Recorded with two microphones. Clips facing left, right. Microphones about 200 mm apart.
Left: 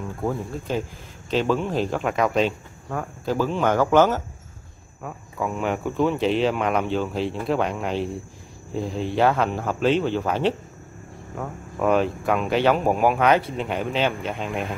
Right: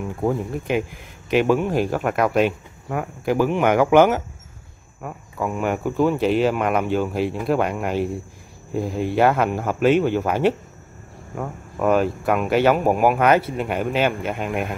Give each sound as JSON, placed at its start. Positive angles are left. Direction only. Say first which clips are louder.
{"t": 0.2, "sound": "speech", "louder": "right 4 dB", "side_deg": -15}